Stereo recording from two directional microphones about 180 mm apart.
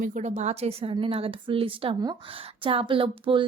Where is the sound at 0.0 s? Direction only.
45° right (ahead or behind).